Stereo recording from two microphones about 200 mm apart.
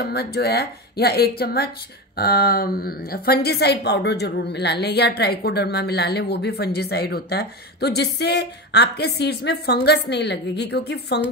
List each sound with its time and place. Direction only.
0.0 s a woman's voice: 55° left (ahead or behind)